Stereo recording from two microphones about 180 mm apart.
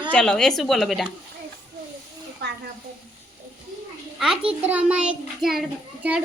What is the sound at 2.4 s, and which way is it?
Speech, 70° right (ahead or behind).